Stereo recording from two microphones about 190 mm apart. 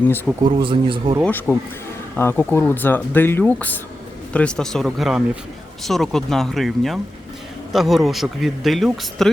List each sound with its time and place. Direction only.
0.4 s speech: 25° right (ahead or behind)
1.2 s speech: 10° left (ahead or behind)